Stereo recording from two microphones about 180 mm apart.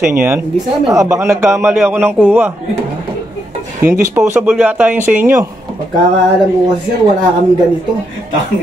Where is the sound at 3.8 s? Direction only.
15° right (ahead or behind).